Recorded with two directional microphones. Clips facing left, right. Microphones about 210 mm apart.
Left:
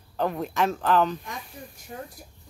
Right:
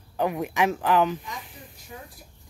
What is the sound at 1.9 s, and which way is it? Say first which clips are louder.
Speech: left 4 dB; 50° left (ahead or behind).